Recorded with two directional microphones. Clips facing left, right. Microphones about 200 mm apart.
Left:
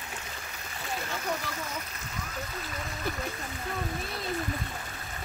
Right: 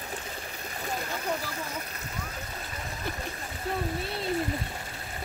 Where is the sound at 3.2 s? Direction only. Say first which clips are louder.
Even; 30° right (ahead or behind).